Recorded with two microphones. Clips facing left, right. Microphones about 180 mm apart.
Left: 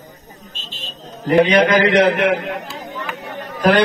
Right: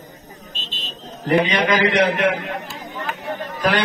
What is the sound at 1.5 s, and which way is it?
Speech, 50° left (ahead or behind).